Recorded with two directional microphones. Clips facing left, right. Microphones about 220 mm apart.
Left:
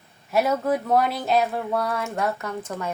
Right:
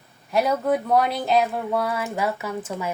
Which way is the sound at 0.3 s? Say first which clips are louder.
Right 1 dB; centre (ahead or behind).